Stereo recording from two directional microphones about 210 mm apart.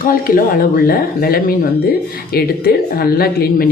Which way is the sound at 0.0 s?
40° left (ahead or behind).